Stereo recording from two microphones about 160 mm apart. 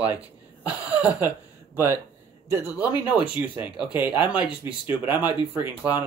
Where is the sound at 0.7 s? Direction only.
10° right (ahead or behind).